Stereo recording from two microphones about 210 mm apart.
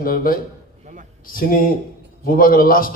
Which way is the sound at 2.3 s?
45° left (ahead or behind).